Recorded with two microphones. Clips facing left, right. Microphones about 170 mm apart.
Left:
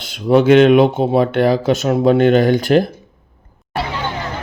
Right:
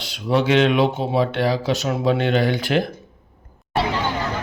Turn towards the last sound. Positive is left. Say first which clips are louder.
# left 7 dB
turn(degrees=45)  # may be behind; listen again after turning